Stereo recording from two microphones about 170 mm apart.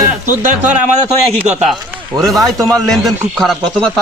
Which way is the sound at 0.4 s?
45° right (ahead or behind).